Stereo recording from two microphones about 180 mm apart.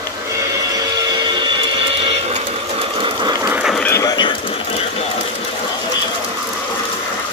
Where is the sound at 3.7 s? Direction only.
10° left (ahead or behind); by 4.8 s 25° left (ahead or behind).